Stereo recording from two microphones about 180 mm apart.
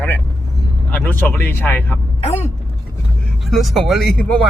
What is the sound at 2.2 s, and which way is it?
Vehicle, 35° left (ahead or behind).